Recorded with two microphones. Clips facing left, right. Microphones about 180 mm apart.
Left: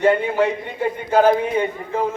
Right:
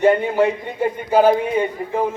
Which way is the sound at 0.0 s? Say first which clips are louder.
Right 2 dB; 15° right (ahead or behind).